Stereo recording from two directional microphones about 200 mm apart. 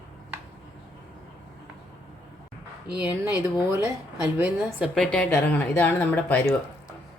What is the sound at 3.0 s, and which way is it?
A woman's voice, 10° right (ahead or behind).